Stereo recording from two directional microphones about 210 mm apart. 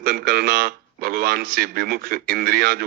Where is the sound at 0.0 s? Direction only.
45° right (ahead or behind).